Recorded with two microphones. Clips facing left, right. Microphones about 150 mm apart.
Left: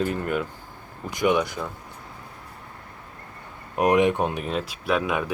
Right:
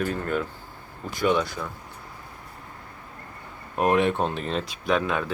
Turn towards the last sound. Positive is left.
turn(degrees=10)  # may be behind; listen again after turning